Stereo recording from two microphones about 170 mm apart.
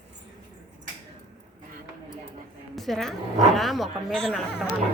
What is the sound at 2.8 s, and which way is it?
Speech, centre (ahead or behind).